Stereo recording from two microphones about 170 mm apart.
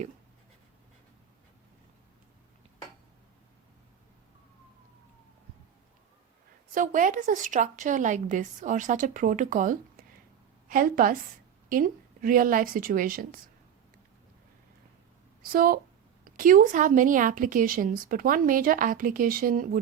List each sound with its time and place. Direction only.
6.7 s a woman's voice: 50° right (ahead or behind)
15.4 s a woman's voice: 55° right (ahead or behind)